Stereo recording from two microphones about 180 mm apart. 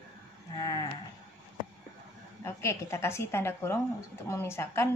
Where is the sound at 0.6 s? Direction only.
20° left (ahead or behind).